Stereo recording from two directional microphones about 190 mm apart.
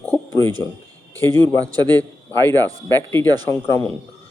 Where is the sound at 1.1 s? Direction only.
20° right (ahead or behind).